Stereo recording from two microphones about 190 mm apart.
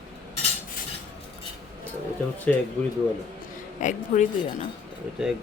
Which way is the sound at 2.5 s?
5° left (ahead or behind).